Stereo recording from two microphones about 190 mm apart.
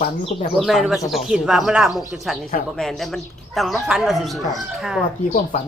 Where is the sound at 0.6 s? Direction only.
Centre (ahead or behind).